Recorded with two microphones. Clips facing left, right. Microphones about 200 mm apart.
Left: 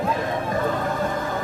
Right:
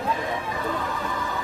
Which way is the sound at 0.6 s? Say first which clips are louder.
Left 5 dB; 50° left (ahead or behind).